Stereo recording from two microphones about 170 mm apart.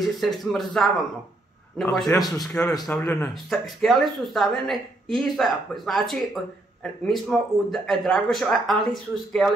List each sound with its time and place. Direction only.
0.0 s a woman's voice: centre (ahead or behind)
2.0 s a man's voice: 20° left (ahead or behind)
2.9 s speech: 10° left (ahead or behind)
3.4 s a woman's voice: centre (ahead or behind)